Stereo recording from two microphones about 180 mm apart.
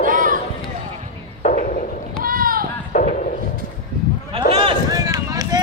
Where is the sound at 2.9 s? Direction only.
45° left (ahead or behind).